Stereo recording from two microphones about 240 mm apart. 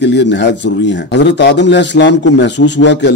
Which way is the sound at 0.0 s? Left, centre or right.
Left.